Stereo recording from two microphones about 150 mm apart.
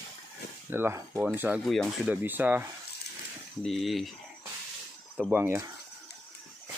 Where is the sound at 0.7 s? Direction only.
15° right (ahead or behind).